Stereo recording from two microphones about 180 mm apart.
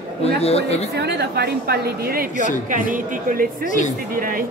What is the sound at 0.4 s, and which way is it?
Speech, 35° left (ahead or behind).